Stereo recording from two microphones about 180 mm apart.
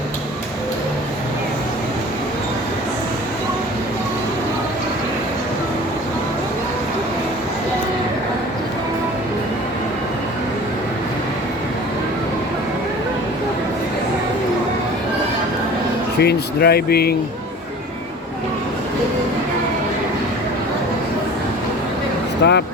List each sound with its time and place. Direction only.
16.1 s speech: 65° left (ahead or behind)
22.4 s speech: 70° left (ahead or behind)